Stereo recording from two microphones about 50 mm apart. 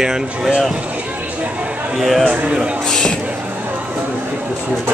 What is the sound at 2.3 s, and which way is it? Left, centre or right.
Speech, centre.